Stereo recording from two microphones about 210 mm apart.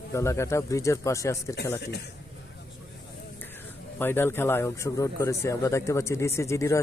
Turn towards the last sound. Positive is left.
turn(degrees=15)  # may be behind; listen again after turning